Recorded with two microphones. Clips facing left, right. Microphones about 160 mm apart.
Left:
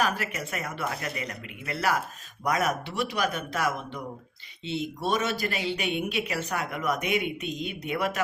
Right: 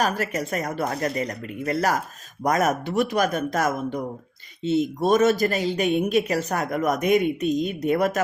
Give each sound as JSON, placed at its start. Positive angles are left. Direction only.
{"t": 0.0, "sound": "speech", "side_deg": -40}